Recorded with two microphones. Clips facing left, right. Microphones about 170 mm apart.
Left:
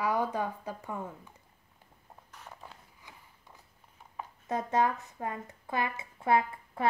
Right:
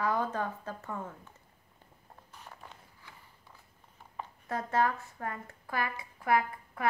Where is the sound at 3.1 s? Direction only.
20° left (ahead or behind).